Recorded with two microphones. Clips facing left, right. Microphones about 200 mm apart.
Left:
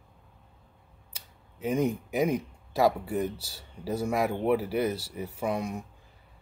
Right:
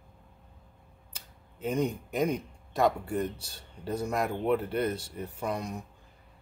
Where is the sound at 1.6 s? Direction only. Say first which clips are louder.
Left 2 dB; 5° left (ahead or behind).